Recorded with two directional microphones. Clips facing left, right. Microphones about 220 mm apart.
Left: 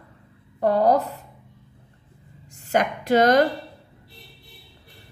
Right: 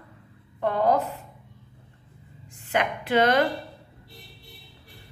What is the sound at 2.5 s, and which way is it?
Speech, 40° left (ahead or behind).